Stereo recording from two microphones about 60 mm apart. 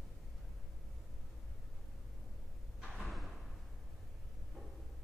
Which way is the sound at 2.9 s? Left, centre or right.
Centre.